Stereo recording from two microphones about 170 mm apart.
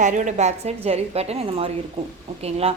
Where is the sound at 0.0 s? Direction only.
45° right (ahead or behind).